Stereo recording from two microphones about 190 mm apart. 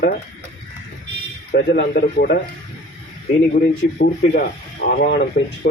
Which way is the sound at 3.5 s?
50° left (ahead or behind).